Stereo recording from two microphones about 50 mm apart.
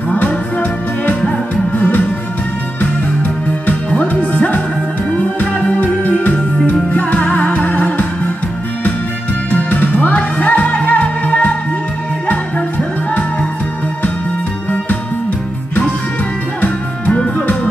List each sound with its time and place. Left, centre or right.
0.1 s music: left
3.6 s music: left
9.5 s music: left
16.6 s music: left